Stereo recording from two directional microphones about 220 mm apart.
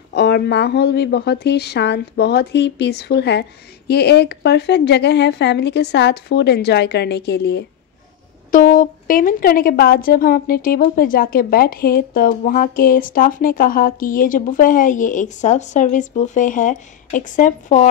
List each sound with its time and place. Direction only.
0.1 s speech: 50° left (ahead or behind)
8.5 s a woman's voice: 40° left (ahead or behind)